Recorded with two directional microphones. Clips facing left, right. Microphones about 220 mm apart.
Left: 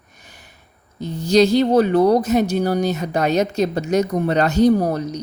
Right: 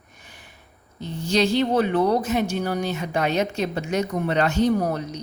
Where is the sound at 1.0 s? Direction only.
40° left (ahead or behind).